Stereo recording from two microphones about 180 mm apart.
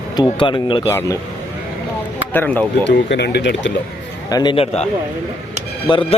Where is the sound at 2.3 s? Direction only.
10° left (ahead or behind).